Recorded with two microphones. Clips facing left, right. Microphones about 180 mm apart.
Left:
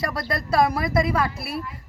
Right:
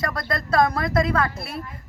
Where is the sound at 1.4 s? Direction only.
20° right (ahead or behind).